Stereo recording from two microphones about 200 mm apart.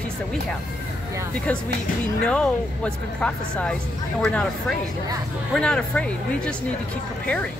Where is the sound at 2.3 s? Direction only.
5° left (ahead or behind).